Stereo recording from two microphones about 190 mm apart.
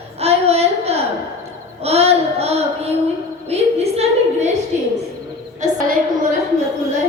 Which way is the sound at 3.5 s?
35° right (ahead or behind).